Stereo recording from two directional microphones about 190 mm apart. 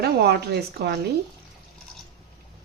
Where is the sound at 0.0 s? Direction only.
60° right (ahead or behind).